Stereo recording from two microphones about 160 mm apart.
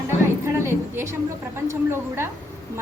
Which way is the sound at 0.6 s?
15° right (ahead or behind).